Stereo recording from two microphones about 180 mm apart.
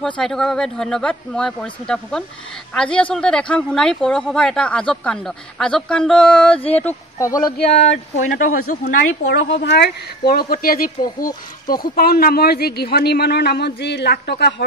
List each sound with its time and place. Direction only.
0.0 s speech: 5° left (ahead or behind)
8.2 s speech: 45° left (ahead or behind)
9.6 s speech: 65° left (ahead or behind)